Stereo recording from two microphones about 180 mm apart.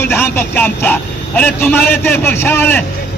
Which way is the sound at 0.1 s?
10° left (ahead or behind).